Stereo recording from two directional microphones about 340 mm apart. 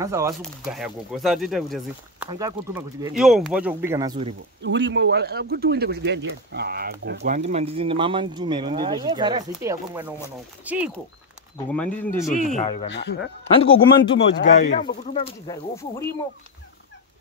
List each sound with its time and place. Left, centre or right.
0.0 s speech: centre
4.6 s speech: right; by 12.3 s centre
12.3 s speech: left
12.8 s speech: left
13.5 s a man's voice: centre